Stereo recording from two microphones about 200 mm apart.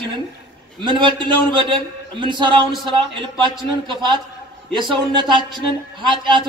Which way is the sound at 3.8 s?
25° right (ahead or behind).